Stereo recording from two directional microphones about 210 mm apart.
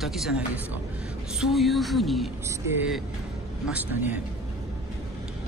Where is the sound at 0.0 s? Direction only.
Centre (ahead or behind).